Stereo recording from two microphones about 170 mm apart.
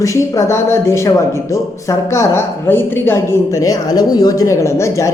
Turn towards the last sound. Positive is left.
turn(degrees=15)  # may be behind; listen again after turning